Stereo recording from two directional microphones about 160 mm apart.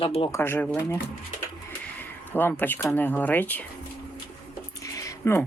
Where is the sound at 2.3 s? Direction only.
10° left (ahead or behind).